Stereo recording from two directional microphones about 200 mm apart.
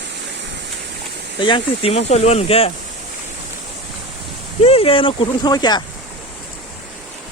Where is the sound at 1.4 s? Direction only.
25° left (ahead or behind).